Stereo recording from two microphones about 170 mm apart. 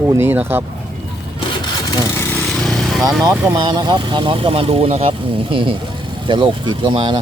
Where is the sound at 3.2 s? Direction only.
25° right (ahead or behind).